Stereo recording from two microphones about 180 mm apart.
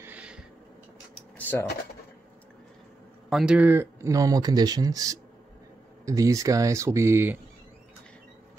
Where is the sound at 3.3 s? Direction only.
5° right (ahead or behind).